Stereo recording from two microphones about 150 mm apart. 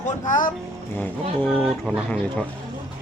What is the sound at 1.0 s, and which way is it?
Speech, 10° left (ahead or behind).